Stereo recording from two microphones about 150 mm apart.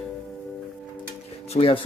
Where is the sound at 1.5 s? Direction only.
40° left (ahead or behind).